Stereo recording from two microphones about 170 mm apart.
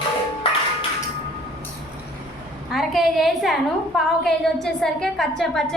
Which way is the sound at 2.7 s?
Centre (ahead or behind).